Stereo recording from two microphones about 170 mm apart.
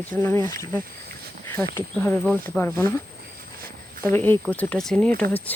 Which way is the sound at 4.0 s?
15° left (ahead or behind).